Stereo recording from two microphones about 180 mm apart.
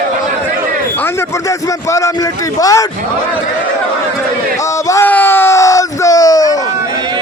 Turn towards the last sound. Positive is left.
turn(degrees=20)  # may be behind; listen again after turning